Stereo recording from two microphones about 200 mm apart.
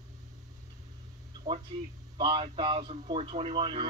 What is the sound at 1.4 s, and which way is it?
Speech, 15° right (ahead or behind).